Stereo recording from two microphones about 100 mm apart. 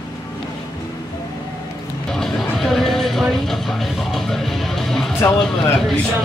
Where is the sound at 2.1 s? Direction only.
5° left (ahead or behind).